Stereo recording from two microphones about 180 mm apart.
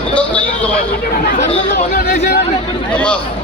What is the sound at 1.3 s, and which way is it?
Chatter, 50° left (ahead or behind).